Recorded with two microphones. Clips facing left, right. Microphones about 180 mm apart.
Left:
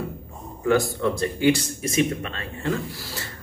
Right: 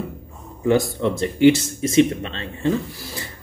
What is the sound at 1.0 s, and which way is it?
Speech, 20° right (ahead or behind).